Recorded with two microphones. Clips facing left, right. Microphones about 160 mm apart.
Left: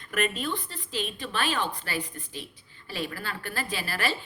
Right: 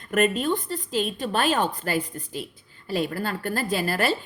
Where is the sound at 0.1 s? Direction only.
45° right (ahead or behind).